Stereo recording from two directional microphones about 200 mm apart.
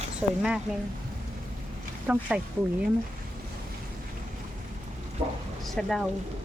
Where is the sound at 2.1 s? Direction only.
5° right (ahead or behind).